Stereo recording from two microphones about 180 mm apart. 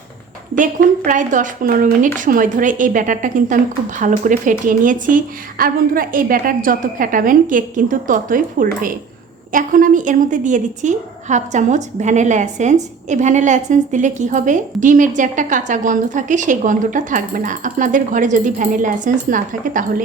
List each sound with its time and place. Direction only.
0.5 s a woman's voice: 50° right (ahead or behind)